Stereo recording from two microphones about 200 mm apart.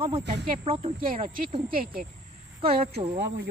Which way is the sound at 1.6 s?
45° right (ahead or behind).